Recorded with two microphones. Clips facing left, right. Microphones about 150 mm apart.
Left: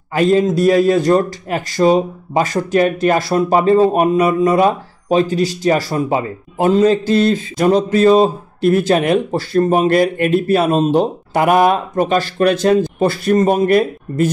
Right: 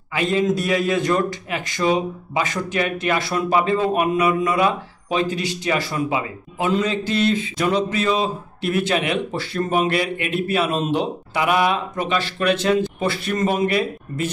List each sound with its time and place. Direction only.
0.1 s a man's voice: 40° left (ahead or behind)